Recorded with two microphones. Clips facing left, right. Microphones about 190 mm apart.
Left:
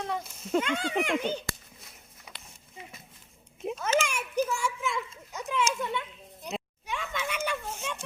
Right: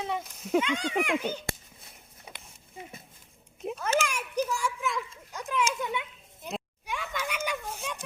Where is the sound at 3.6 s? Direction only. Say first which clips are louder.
Left 1 dB; centre (ahead or behind).